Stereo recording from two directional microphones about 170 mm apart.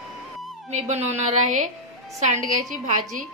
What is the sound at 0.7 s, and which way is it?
A woman's voice, 40° right (ahead or behind).